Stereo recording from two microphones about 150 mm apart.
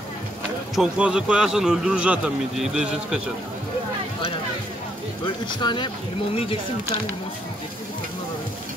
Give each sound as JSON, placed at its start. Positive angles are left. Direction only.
{"t": 0.7, "sound": "speech", "side_deg": -5}
{"t": 5.2, "sound": "speech", "side_deg": 30}